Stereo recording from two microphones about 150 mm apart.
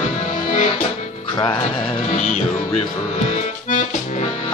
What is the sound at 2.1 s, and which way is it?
Music, 50° left (ahead or behind).